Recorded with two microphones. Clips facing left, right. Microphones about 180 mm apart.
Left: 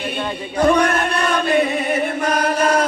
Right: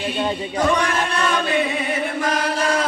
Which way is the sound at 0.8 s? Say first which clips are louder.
Left 4 dB; 55° left (ahead or behind).